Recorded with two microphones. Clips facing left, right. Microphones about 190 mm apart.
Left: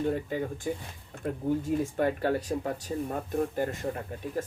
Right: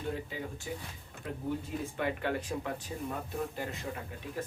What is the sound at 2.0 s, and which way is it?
Speech, 40° left (ahead or behind).